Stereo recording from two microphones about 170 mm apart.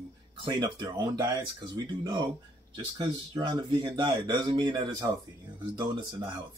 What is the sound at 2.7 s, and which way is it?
Speech, 25° right (ahead or behind).